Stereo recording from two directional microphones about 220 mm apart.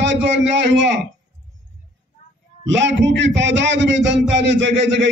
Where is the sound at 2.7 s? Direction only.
55° right (ahead or behind).